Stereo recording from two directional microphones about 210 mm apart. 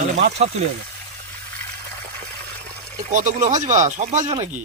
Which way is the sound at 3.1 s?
35° right (ahead or behind).